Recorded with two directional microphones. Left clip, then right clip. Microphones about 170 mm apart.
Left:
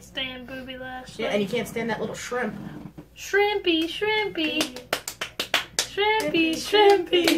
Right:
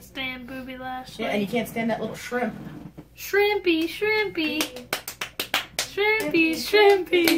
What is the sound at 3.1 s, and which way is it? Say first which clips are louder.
Speech: right 1 dB; 20° right (ahead or behind).